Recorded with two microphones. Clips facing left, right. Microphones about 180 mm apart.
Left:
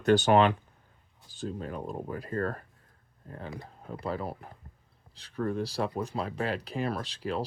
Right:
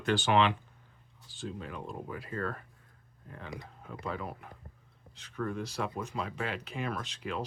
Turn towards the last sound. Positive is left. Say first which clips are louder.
# left 4 dB
turn(degrees=35)  # may be behind; listen again after turning